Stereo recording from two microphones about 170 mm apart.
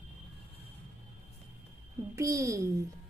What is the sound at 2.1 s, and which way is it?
Speech, 20° right (ahead or behind).